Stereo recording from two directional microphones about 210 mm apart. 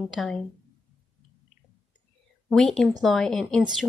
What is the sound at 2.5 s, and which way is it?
A woman's voice, centre (ahead or behind).